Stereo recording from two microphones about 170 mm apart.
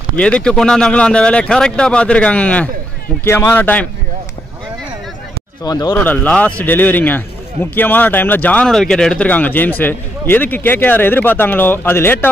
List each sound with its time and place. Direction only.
0.2 s speech: 5° left (ahead or behind)
5.6 s speech: 25° left (ahead or behind)
6.0 s speech: 10° left (ahead or behind)